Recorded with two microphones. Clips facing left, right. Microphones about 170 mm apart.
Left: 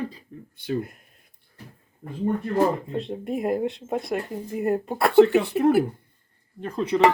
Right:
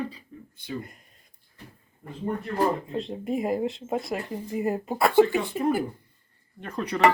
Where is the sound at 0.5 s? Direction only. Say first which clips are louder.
Left 7 dB; 65° left (ahead or behind).